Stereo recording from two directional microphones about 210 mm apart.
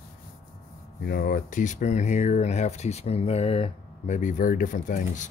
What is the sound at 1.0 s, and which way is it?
Speech, 50° left (ahead or behind).